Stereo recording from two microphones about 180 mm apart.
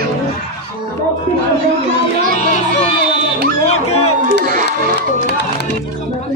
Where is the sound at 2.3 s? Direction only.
40° left (ahead or behind).